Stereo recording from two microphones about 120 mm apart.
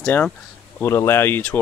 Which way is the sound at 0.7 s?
20° left (ahead or behind).